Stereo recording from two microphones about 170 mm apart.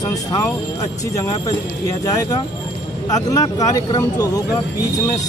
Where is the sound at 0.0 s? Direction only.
20° left (ahead or behind).